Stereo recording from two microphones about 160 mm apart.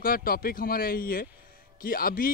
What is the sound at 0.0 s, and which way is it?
Speech, 65° left (ahead or behind).